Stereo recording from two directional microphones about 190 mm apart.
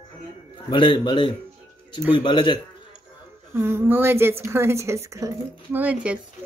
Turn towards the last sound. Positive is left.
turn(degrees=-10)  # may be behind; listen again after turning